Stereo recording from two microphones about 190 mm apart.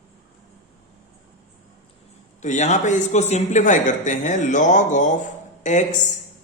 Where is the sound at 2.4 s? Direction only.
40° left (ahead or behind).